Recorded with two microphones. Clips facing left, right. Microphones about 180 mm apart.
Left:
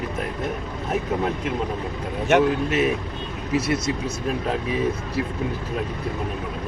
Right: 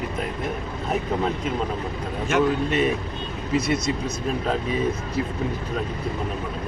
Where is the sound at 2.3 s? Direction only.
70° left (ahead or behind).